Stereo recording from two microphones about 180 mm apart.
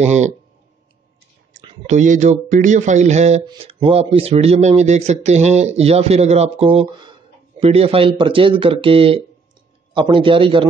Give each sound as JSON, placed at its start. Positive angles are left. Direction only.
{"t": 0.0, "sound": "speech", "side_deg": -40}
{"t": 1.9, "sound": "a man's voice", "side_deg": -40}